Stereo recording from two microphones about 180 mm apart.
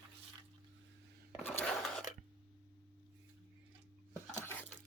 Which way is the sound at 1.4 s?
10° left (ahead or behind).